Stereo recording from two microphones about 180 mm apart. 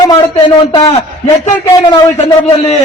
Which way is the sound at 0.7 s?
35° left (ahead or behind).